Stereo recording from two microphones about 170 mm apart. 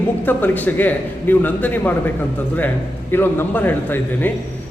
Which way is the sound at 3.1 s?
15° left (ahead or behind).